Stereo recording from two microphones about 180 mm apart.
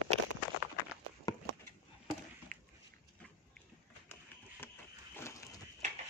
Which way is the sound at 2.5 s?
50° right (ahead or behind).